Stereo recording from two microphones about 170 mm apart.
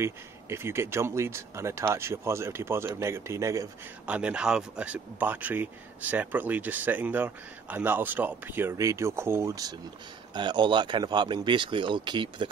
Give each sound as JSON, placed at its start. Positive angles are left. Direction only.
{"t": 0.0, "sound": "speech", "side_deg": -15}